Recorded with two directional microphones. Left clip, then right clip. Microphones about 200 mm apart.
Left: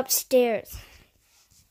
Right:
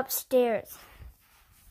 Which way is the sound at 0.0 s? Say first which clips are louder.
Left 4 dB; 20° left (ahead or behind).